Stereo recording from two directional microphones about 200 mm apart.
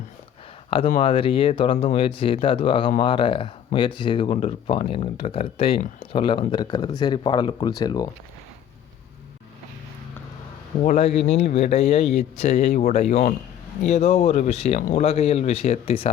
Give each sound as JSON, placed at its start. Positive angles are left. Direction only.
{"t": 0.7, "sound": "speech", "side_deg": 30}
{"t": 10.8, "sound": "speech", "side_deg": 35}